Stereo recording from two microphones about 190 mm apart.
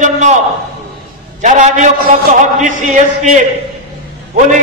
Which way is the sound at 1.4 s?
40° right (ahead or behind).